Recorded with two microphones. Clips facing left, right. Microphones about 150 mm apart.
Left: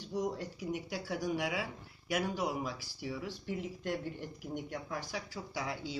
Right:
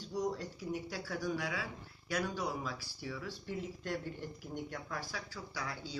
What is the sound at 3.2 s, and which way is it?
Speech, 15° left (ahead or behind).